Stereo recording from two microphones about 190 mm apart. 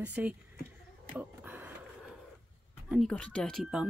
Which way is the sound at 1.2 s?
10° right (ahead or behind).